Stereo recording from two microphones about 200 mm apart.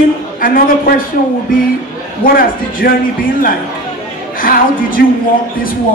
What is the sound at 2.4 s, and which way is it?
Speech, 45° left (ahead or behind).